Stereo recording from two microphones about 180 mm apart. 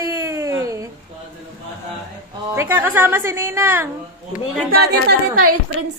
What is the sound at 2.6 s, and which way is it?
A woman's voice, 10° right (ahead or behind).